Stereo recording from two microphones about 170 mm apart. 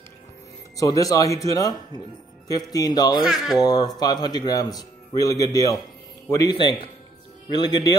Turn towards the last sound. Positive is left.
turn(degrees=25)  # may be behind; listen again after turning